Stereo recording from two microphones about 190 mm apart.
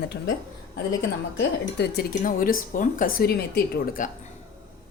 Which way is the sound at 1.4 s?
60° left (ahead or behind).